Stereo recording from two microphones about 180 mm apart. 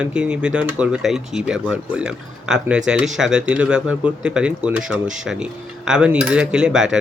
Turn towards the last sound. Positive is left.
turn(degrees=-5)  # may be behind; listen again after turning